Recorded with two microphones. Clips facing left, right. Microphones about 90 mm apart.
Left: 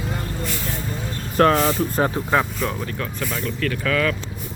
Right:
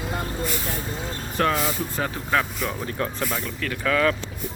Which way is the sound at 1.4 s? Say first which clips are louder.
Left 7 dB; 45° left (ahead or behind).